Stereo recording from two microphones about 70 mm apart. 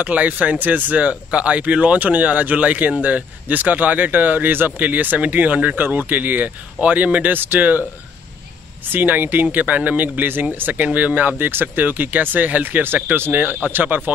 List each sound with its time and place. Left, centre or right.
0.0 s speech: right
8.9 s speech: right